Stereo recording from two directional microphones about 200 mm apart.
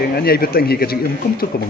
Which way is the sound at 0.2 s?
50° left (ahead or behind).